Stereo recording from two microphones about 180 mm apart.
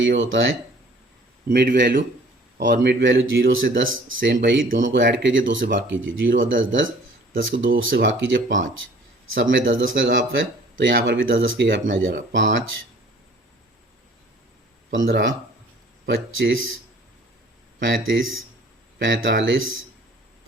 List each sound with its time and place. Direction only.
0.2 s speech: 90° right
1.5 s speech: 65° right (ahead or behind)
11.9 s speech: 90° right
15.0 s speech: 80° right
16.0 s speech: 90° right
17.7 s speech: 90° right